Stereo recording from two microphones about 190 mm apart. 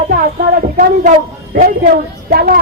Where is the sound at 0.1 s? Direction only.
50° right (ahead or behind).